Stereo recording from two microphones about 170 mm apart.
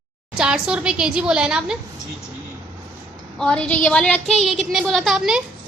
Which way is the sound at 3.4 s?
5° left (ahead or behind).